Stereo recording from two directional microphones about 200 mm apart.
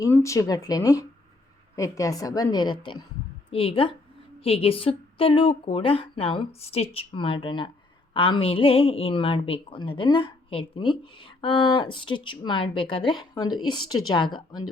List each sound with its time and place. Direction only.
0.0 s speech: 15° left (ahead or behind)